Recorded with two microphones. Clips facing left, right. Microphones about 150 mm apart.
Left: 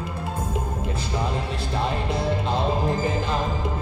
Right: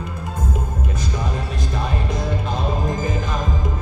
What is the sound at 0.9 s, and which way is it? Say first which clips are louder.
Music: even; 30° left (ahead or behind).